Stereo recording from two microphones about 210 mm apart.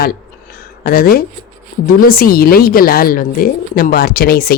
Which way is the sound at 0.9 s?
45° left (ahead or behind).